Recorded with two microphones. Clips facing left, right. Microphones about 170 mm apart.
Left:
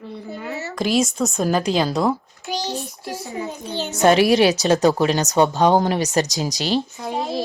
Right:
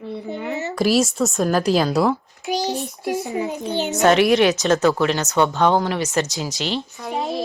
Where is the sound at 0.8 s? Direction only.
5° right (ahead or behind).